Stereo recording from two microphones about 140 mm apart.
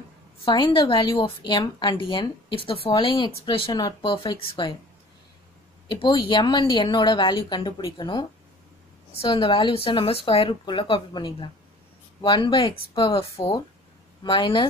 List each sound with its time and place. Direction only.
0.5 s a woman's voice: 35° left (ahead or behind)
5.9 s a woman's voice: 35° left (ahead or behind)